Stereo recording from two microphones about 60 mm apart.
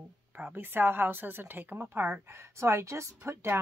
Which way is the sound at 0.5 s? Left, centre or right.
Right.